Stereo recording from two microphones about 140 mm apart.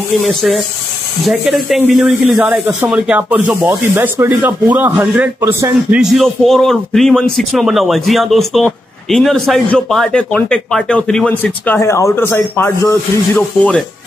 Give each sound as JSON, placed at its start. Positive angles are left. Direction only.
{"t": 0.1, "sound": "a man's voice", "side_deg": 0}
{"t": 5.4, "sound": "speech", "side_deg": -20}
{"t": 5.9, "sound": "a man's voice", "side_deg": 0}